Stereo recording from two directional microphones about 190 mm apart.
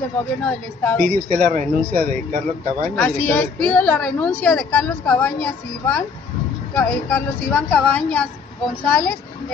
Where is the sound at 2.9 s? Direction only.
10° left (ahead or behind).